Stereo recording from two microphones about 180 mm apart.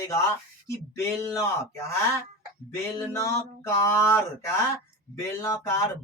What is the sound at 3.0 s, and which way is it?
Speech, 15° left (ahead or behind).